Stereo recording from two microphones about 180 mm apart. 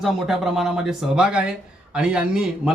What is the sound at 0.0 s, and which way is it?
Speech, centre (ahead or behind).